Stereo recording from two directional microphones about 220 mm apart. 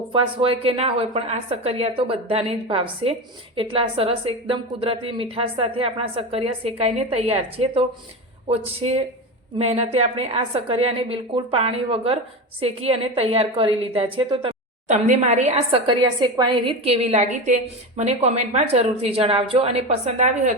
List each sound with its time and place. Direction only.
0.1 s a woman's voice: 25° right (ahead or behind)